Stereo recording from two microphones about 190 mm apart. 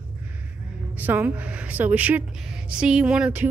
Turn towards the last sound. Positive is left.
turn(degrees=-5)  # may be behind; listen again after turning